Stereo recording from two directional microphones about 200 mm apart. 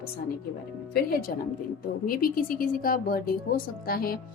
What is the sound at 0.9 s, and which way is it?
A woman's voice, 50° left (ahead or behind).